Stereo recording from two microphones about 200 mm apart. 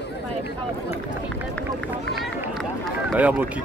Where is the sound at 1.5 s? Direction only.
5° left (ahead or behind).